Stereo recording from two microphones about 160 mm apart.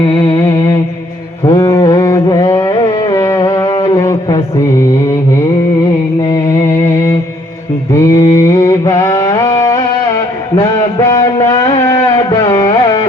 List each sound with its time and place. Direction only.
0.0 s music: 30° left (ahead or behind)
1.5 s a sound: 20° left (ahead or behind)
6.8 s music: 15° left (ahead or behind)
7.9 s mantra: 20° left (ahead or behind)
9.4 s a sound: 20° left (ahead or behind)
12.4 s carnatic music: 25° left (ahead or behind)